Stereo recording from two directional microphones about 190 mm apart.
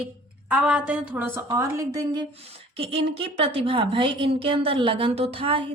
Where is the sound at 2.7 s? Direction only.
30° right (ahead or behind).